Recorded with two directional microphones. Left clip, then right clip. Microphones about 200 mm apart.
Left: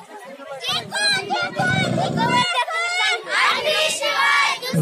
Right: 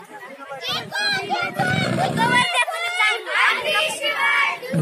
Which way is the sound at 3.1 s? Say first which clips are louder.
Right 1 dB; 30° left (ahead or behind).